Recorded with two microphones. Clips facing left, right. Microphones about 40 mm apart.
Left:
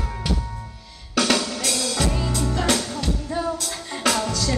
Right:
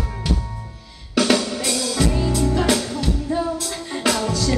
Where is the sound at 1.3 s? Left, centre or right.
Centre.